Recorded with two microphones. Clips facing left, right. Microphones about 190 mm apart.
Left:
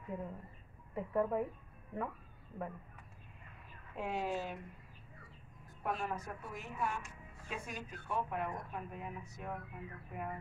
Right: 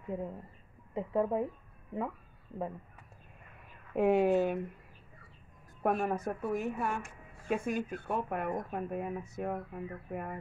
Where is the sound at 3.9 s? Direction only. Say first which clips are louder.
Right 12 dB; 55° right (ahead or behind).